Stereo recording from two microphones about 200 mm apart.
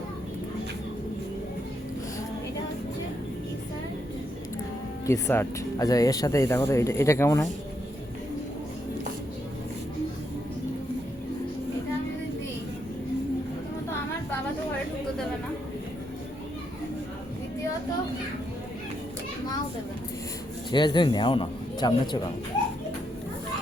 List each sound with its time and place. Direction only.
5.0 s speech: 10° left (ahead or behind)
20.7 s a man's voice: 20° left (ahead or behind)